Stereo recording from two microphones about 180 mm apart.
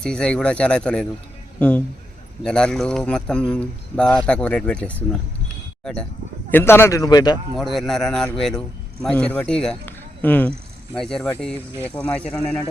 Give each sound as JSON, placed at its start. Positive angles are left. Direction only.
{"t": 0.0, "sound": "a man's voice", "side_deg": 5}
{"t": 7.5, "sound": "a man's voice", "side_deg": 0}